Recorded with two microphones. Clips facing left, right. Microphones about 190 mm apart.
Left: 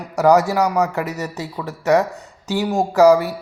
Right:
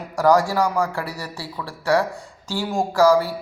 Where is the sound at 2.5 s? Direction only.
20° left (ahead or behind).